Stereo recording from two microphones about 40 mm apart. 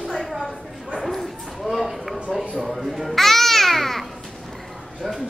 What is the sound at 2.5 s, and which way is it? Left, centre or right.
Babbling, centre.